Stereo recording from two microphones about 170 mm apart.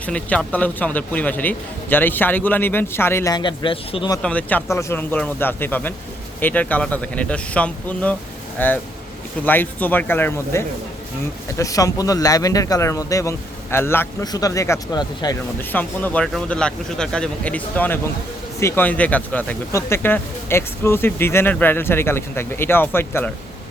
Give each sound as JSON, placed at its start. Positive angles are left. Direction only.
{"t": 0.0, "sound": "speech", "side_deg": 10}
{"t": 4.2, "sound": "speech", "side_deg": 10}
{"t": 15.7, "sound": "speech", "side_deg": 10}